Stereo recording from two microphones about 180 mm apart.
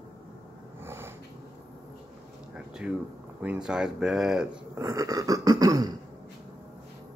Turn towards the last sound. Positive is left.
turn(degrees=-20)  # may be behind; listen again after turning